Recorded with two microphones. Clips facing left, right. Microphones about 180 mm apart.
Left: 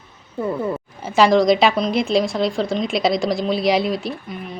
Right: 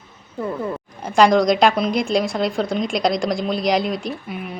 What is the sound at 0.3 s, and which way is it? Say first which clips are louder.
A woman's voice: left 2 dB; 5° left (ahead or behind).